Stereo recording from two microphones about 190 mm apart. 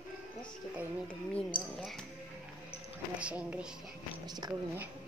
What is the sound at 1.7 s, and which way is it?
Speech, centre (ahead or behind).